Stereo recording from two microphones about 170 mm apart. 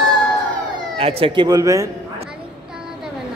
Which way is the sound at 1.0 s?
35° right (ahead or behind).